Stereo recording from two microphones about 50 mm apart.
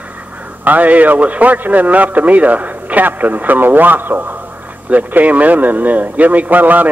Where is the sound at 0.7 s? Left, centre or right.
Right.